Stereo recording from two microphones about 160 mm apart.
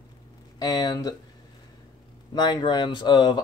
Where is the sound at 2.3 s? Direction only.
25° left (ahead or behind).